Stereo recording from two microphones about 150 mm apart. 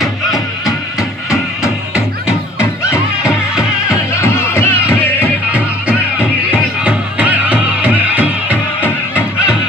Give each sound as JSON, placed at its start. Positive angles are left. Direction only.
{"t": 1.3, "sound": "music", "side_deg": 20}
{"t": 5.5, "sound": "music", "side_deg": -10}